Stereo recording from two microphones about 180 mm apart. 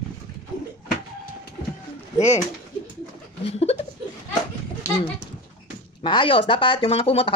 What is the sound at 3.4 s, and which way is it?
Chuckle, 35° left (ahead or behind).